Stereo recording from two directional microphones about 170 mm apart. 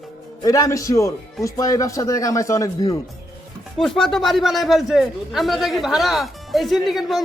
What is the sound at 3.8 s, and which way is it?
A man's voice, centre (ahead or behind).